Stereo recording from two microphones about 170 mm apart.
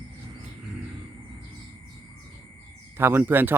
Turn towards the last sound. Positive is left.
turn(degrees=-10)  # may be behind; listen again after turning